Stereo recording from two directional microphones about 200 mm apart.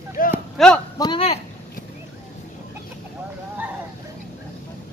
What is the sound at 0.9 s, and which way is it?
Speech, 25° left (ahead or behind).